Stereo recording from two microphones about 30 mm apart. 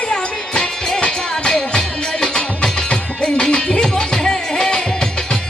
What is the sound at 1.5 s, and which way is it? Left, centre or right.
Music, left.